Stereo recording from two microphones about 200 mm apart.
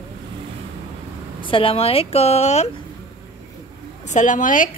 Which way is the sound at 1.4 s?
25° left (ahead or behind).